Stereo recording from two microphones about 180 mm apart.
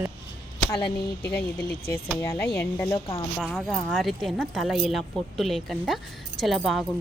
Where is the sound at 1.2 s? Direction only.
60° left (ahead or behind).